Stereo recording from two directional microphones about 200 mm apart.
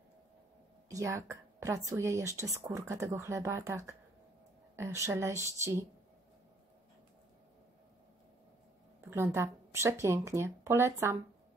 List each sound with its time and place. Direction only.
0.8 s a woman's voice: 15° right (ahead or behind)
9.1 s speech: 10° right (ahead or behind)